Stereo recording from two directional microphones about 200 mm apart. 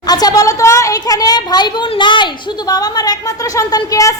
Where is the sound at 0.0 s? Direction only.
20° left (ahead or behind).